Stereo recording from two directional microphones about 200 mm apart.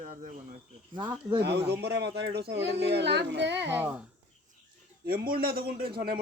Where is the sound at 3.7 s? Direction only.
10° right (ahead or behind).